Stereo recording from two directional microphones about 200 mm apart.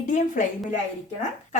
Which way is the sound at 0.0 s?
40° left (ahead or behind).